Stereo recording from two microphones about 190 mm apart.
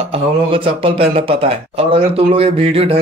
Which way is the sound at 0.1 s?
30° right (ahead or behind).